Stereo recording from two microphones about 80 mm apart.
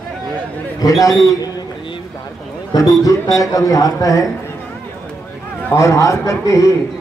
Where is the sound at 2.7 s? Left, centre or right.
Left.